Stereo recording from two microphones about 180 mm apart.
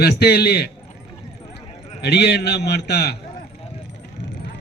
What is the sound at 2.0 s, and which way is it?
A man's voice, 65° left (ahead or behind).